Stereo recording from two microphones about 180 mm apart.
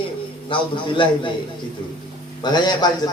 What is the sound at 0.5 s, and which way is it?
Speech, 30° left (ahead or behind).